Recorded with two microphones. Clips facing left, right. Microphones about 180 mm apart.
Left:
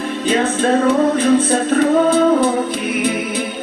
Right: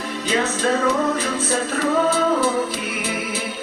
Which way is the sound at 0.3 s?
55° left (ahead or behind).